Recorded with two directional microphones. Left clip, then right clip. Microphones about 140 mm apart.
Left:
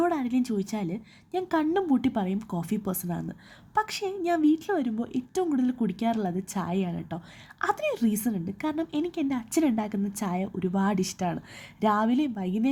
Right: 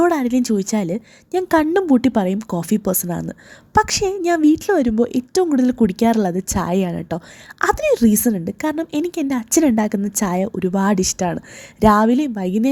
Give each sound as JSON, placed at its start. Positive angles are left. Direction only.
{"t": 0.0, "sound": "a woman's voice", "side_deg": -45}